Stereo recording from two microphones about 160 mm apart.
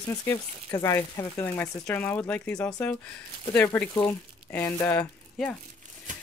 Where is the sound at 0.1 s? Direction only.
15° left (ahead or behind).